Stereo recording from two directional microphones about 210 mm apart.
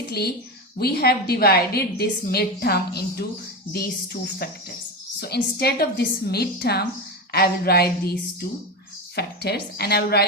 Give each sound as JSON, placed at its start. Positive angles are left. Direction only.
{"t": 0.1, "sound": "a woman's voice", "side_deg": 50}